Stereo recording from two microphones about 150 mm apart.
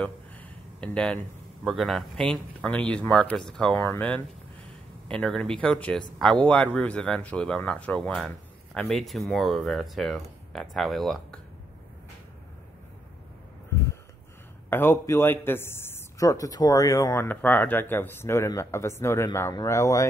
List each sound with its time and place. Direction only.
0.0 s a sound: 10° left (ahead or behind)
1.6 s a man's voice: centre (ahead or behind)
14.7 s a man's voice: 15° left (ahead or behind)